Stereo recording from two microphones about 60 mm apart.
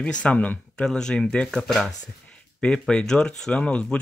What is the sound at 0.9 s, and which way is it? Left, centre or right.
Speech, centre.